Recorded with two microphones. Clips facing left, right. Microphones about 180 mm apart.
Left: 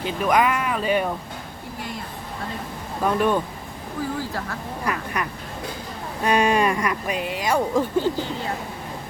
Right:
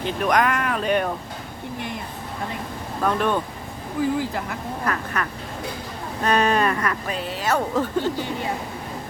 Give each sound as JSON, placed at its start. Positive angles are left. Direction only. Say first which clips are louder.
{"t": 0.0, "sound": "speech", "louder": "even", "side_deg": 5}
{"t": 3.0, "sound": "speech", "louder": "left 1 dB", "side_deg": 10}
{"t": 4.2, "sound": "speech", "louder": "right 2 dB", "side_deg": -20}
{"t": 4.9, "sound": "speech", "louder": "left 1 dB", "side_deg": 10}